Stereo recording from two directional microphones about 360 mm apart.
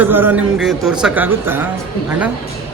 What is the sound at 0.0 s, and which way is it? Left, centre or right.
A man's voice, centre.